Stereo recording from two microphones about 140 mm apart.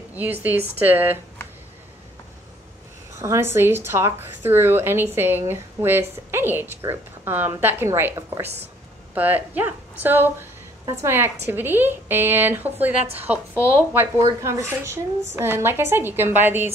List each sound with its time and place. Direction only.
0.1 s a woman's voice: 10° right (ahead or behind)
3.2 s a woman's voice: 20° right (ahead or behind)